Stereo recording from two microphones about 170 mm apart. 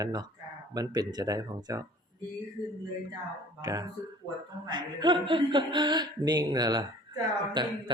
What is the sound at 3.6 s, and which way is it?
Speech, 20° right (ahead or behind).